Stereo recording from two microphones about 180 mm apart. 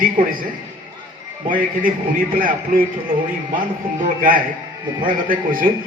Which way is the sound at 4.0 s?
50° right (ahead or behind).